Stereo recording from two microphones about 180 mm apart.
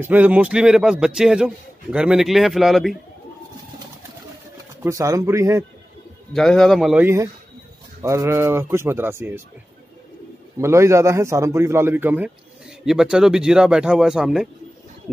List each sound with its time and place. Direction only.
0.0 s a man's voice: 10° right (ahead or behind)
4.8 s a man's voice: 15° right (ahead or behind)
6.3 s a man's voice: 5° left (ahead or behind); by 9.4 s 10° right (ahead or behind)
10.6 s a man's voice: 15° right (ahead or behind)